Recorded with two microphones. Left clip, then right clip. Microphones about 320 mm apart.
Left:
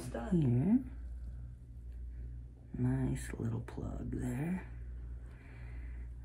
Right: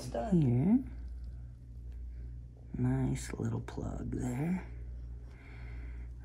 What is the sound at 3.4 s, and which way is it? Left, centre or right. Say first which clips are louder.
Speech: right 3 dB; centre.